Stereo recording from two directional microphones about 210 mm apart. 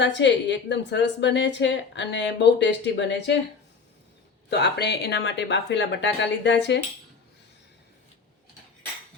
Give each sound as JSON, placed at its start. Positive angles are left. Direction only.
{"t": 0.0, "sound": "a woman's voice", "side_deg": 60}
{"t": 4.4, "sound": "a woman's voice", "side_deg": 55}